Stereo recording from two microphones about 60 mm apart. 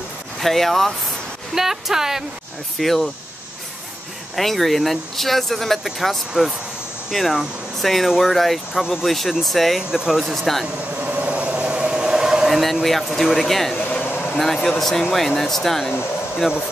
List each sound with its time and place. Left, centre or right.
0.4 s speech: centre
2.8 s speech: centre
4.4 s speech: centre
9.8 s speech: centre
10.3 s speech: centre
11.0 s train: right
12.4 s speech: centre
13.7 s a sound: centre
14.0 s a sound: left
14.4 s speech: centre